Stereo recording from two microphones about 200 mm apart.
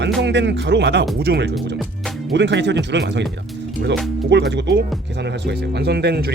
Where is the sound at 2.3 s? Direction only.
60° right (ahead or behind).